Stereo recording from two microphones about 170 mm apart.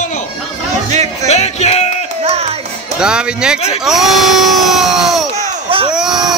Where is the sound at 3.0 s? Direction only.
5° right (ahead or behind).